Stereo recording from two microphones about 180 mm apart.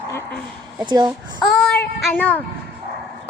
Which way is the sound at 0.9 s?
25° right (ahead or behind).